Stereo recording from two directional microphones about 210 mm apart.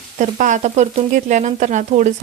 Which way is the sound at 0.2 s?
35° right (ahead or behind).